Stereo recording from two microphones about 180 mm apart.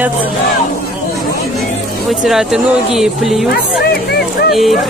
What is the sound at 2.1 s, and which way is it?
Speech, centre (ahead or behind).